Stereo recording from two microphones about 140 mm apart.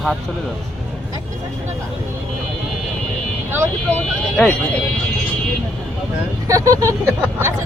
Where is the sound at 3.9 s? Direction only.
5° left (ahead or behind).